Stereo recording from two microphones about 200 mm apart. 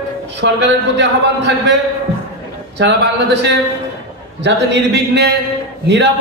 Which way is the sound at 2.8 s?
60° right (ahead or behind).